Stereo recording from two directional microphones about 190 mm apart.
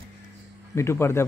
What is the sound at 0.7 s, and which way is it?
Speech, 15° left (ahead or behind).